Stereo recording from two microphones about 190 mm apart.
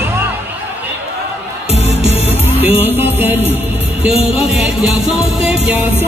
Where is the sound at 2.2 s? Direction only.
10° right (ahead or behind).